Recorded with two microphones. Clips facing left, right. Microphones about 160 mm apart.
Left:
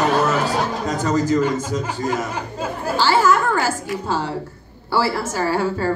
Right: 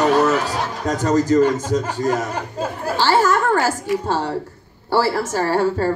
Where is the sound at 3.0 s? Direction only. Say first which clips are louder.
Even; 40° right (ahead or behind).